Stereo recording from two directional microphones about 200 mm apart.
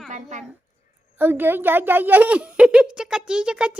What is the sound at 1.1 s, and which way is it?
A child's voice, 10° right (ahead or behind).